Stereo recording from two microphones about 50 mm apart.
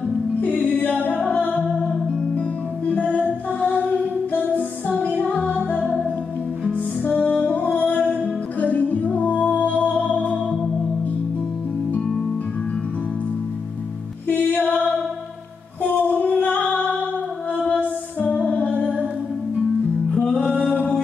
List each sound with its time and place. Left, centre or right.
0.5 s music: left
2.9 s music: left
4.8 s music: left
6.7 s music: left
8.0 s music: right
8.5 s music: left
14.2 s music: left
16.0 s music: left
20.1 s music: left